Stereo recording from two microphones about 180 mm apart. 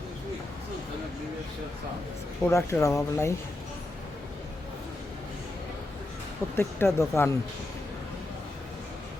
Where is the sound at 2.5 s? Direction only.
15° left (ahead or behind).